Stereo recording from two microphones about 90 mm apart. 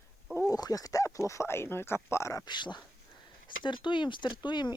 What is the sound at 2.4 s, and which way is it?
Speech, 55° left (ahead or behind).